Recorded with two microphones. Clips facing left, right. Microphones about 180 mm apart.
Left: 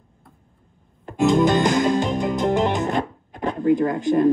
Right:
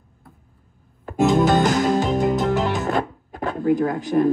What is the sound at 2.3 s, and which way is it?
Music, 15° left (ahead or behind).